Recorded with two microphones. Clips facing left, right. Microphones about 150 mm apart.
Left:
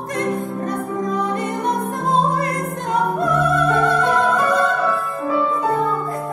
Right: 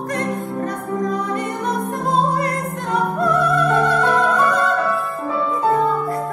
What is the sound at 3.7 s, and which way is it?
Opera, 40° right (ahead or behind).